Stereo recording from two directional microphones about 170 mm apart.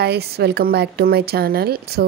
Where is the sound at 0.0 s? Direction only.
75° right (ahead or behind).